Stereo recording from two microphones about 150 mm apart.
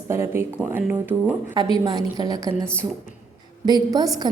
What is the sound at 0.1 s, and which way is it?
Speech, 15° right (ahead or behind).